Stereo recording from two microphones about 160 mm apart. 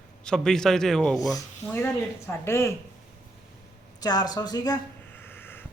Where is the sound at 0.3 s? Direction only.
5° left (ahead or behind).